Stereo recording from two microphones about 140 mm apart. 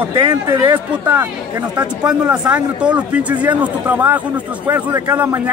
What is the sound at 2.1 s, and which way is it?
Speech, 10° right (ahead or behind).